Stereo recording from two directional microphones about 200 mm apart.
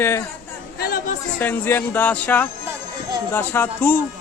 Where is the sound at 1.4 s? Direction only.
10° left (ahead or behind).